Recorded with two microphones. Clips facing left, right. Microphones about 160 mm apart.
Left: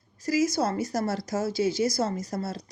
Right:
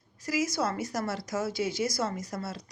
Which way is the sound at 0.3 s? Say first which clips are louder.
Left 5 dB; 35° left (ahead or behind).